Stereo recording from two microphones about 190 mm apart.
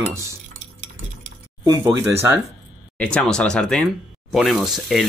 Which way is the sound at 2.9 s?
5° left (ahead or behind).